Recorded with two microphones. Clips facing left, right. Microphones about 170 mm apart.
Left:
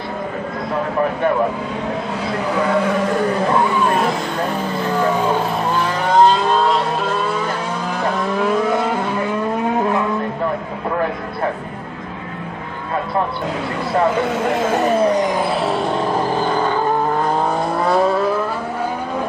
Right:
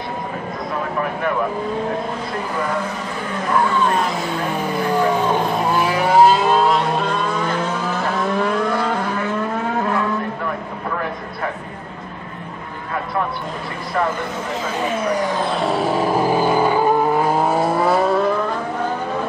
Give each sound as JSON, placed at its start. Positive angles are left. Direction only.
{"t": 2.5, "sound": "speech", "side_deg": 70}
{"t": 5.7, "sound": "vehicle", "side_deg": -10}
{"t": 14.1, "sound": "speech", "side_deg": 70}
{"t": 14.7, "sound": "speech", "side_deg": 45}
{"t": 15.2, "sound": "vehicle", "side_deg": 15}
{"t": 15.5, "sound": "vehicle", "side_deg": 0}